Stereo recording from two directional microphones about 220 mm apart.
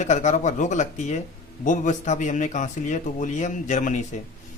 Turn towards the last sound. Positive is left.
turn(degrees=35)  # may be behind; listen again after turning